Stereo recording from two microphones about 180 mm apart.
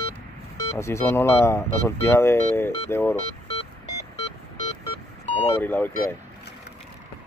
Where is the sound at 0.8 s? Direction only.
15° left (ahead or behind).